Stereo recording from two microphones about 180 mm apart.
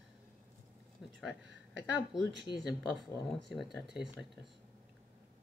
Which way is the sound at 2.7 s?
Centre (ahead or behind).